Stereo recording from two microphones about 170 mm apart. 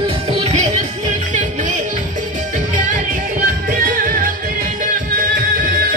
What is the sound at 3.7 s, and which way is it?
Music, 55° right (ahead or behind).